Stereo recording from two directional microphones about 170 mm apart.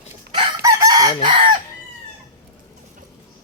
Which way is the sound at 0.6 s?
20° right (ahead or behind).